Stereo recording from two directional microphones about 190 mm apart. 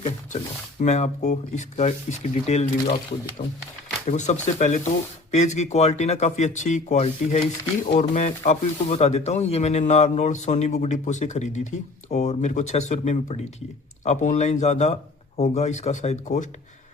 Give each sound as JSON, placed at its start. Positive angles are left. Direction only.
{"t": 0.8, "sound": "speech", "side_deg": 40}
{"t": 4.0, "sound": "speech", "side_deg": 40}